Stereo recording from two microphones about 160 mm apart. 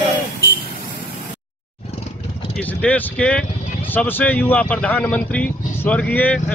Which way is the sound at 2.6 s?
10° left (ahead or behind).